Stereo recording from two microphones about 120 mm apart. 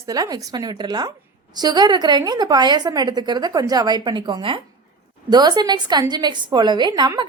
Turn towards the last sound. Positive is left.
turn(degrees=-35)  # may be behind; listen again after turning